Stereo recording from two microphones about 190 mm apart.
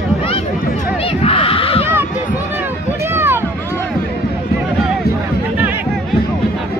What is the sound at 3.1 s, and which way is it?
Boat, 10° right (ahead or behind).